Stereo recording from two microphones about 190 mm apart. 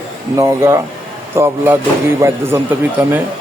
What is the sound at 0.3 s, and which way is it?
Speech, 15° right (ahead or behind).